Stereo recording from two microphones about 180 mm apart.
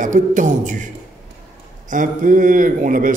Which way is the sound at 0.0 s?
45° right (ahead or behind).